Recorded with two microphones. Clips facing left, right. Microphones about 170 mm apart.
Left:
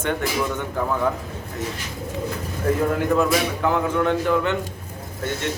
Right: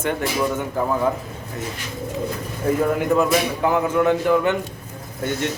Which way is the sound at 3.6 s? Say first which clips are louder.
Right 3 dB; 10° right (ahead or behind).